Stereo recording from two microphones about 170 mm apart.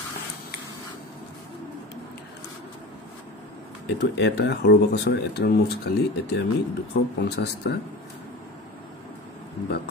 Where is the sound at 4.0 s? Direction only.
80° left.